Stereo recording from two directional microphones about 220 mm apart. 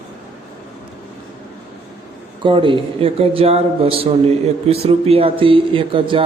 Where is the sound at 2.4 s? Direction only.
25° right (ahead or behind).